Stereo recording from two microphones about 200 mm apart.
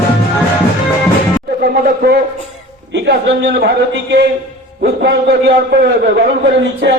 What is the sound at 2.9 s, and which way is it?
A man's voice, 60° right (ahead or behind).